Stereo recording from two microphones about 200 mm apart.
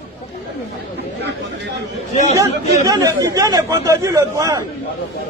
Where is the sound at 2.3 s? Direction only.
15° right (ahead or behind).